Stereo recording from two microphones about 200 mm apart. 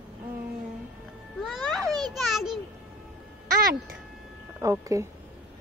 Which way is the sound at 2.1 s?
Centre (ahead or behind).